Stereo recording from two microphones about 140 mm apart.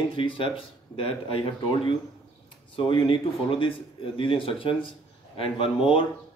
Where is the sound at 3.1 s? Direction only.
40° left (ahead or behind).